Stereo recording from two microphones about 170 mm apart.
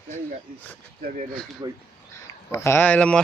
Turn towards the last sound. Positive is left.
turn(degrees=10)  # may be behind; listen again after turning